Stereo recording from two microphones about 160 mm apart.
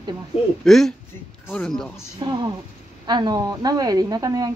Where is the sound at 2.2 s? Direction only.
30° right (ahead or behind).